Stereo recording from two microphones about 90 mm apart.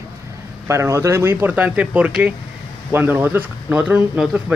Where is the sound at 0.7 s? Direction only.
30° right (ahead or behind).